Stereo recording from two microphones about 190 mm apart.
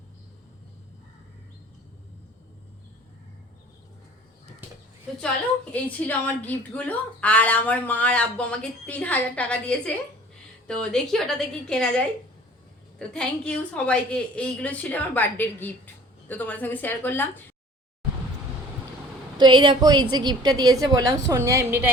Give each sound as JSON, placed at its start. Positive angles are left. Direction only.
{"t": 5.7, "sound": "a woman's voice", "side_deg": 10}
{"t": 19.4, "sound": "a woman's voice", "side_deg": -25}